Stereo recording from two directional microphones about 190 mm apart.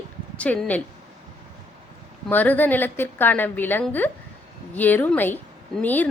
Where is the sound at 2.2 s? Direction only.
10° left (ahead or behind).